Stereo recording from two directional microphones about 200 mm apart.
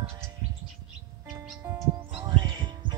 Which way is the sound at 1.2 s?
Centre (ahead or behind).